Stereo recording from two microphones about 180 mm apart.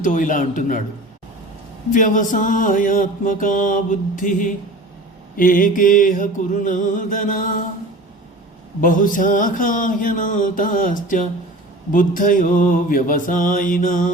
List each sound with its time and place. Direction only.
0.0 s mantra: 45° left (ahead or behind)
1.9 s mantra: 45° left (ahead or behind)
8.8 s mantra: 50° left (ahead or behind)